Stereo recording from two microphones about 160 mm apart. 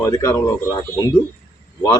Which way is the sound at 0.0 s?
20° left (ahead or behind).